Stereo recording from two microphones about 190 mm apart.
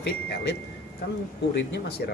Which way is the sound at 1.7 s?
55° left (ahead or behind).